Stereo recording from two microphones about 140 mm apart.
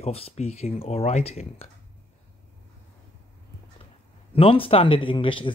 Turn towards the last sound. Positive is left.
turn(degrees=35)  # may be behind; listen again after turning